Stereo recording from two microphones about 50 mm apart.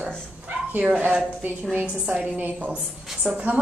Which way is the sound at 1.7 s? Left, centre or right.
Right.